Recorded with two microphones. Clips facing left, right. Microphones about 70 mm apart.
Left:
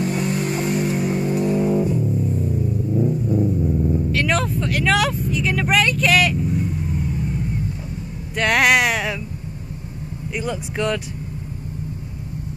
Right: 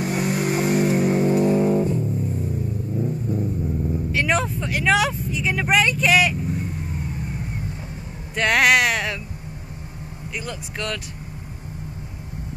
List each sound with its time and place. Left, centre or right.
0.0 s music: centre
1.8 s music: centre
3.1 s vehicle: centre
4.1 s vehicle: centre
7.1 s vehicle: right
8.4 s a sound: centre
10.3 s speech: centre